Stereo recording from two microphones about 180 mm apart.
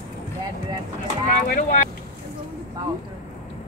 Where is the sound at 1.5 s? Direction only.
45° left (ahead or behind).